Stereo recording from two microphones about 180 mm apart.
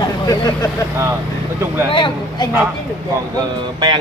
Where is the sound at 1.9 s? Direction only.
30° left (ahead or behind).